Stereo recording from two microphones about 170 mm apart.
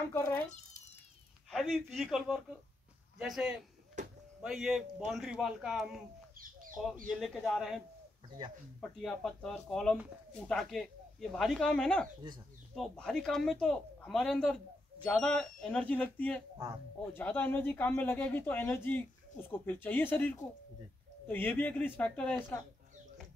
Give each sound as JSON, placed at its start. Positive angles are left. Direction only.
{"t": 0.1, "sound": "speech", "side_deg": 20}
{"t": 1.5, "sound": "speech", "side_deg": 0}
{"t": 4.0, "sound": "a sound", "side_deg": -45}
{"t": 4.4, "sound": "speech", "side_deg": 0}
{"t": 6.3, "sound": "a sound", "side_deg": -55}
{"t": 7.1, "sound": "speech", "side_deg": 0}
{"t": 9.0, "sound": "speech", "side_deg": 0}